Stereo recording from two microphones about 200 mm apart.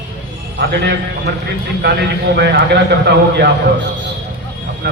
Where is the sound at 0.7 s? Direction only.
60° right (ahead or behind).